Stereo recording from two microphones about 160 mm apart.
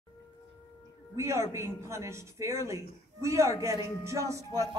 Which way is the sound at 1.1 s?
20° right (ahead or behind).